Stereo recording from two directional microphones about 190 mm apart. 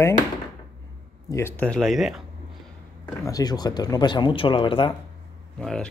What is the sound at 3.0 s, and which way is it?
Speech, 15° left (ahead or behind).